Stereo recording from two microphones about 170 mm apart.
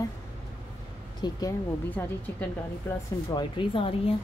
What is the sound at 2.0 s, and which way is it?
Speech, 10° left (ahead or behind).